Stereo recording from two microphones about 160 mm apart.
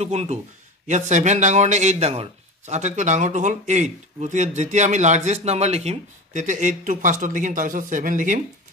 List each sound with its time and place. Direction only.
0.0 s speech: 45° right (ahead or behind)